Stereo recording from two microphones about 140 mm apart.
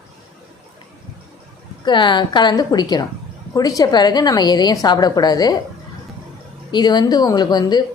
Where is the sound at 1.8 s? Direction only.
35° left (ahead or behind).